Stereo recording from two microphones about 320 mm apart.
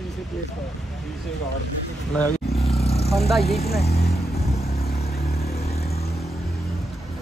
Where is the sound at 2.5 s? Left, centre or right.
Centre.